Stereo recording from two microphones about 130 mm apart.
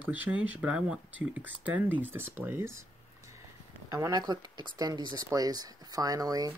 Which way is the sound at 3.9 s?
25° right (ahead or behind).